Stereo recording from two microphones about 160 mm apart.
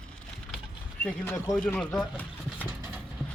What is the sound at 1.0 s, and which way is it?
Speech, 10° left (ahead or behind).